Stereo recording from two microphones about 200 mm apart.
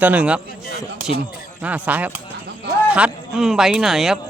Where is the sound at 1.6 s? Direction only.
5° right (ahead or behind).